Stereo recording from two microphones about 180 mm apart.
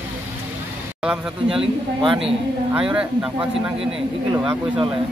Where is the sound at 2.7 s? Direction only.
5° right (ahead or behind).